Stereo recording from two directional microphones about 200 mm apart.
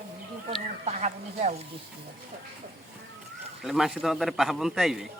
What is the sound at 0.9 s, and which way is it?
Speech, 35° right (ahead or behind).